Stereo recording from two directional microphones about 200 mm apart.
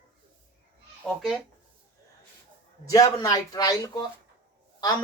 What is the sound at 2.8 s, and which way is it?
Speech, 15° left (ahead or behind).